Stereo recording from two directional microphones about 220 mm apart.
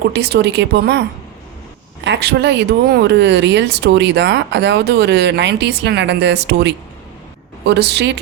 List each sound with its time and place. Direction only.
0.1 s speech: 50° right (ahead or behind)
2.0 s speech: 50° right (ahead or behind)